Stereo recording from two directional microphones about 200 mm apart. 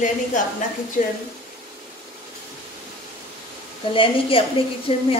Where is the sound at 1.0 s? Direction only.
45° left (ahead or behind).